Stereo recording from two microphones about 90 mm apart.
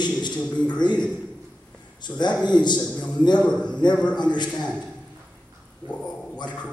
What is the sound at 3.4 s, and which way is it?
Speech, 10° left (ahead or behind).